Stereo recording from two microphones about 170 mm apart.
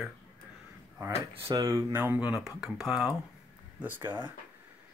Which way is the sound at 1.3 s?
30° right (ahead or behind).